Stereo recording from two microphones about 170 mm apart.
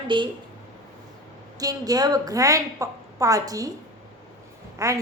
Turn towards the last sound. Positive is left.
turn(degrees=-20)  # may be behind; listen again after turning